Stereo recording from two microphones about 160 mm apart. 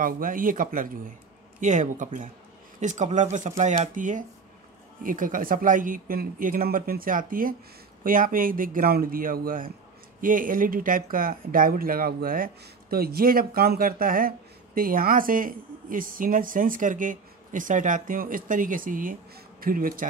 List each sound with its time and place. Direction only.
0.0 s speech: 60° right (ahead or behind)